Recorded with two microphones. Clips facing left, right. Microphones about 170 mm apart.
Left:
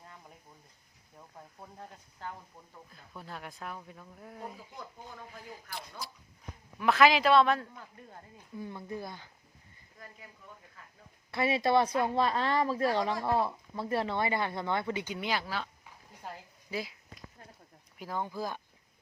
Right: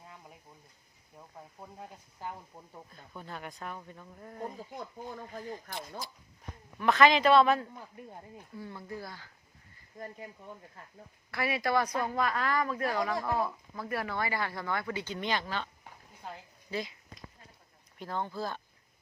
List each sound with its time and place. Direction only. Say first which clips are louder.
0.0 s a sound: right 1 dB; 5° right (ahead or behind)
1.4 s speech: right 1 dB; 5° right (ahead or behind)
2.9 s speech: even; centre (ahead or behind)
4.5 s speech: right 5 dB; 40° right (ahead or behind)
6.7 s speech: even; 5° left (ahead or behind)
7.8 s speech: right 3 dB; 15° right (ahead or behind)
8.5 s speech: left 3 dB; 20° left (ahead or behind)
11.3 s speech: left 3 dB; 25° left (ahead or behind); by 15.7 s 5° left (ahead or behind)
16.7 s speech: right 1 dB; 5° left (ahead or behind)